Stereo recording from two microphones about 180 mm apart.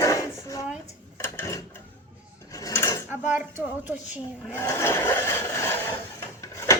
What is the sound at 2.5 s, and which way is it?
Drawer open or close, 15° left (ahead or behind).